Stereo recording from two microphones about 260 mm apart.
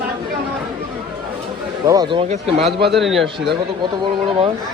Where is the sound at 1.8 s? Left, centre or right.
Centre.